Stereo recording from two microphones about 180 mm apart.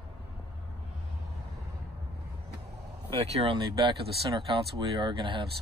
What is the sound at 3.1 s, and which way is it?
Speech, 30° right (ahead or behind).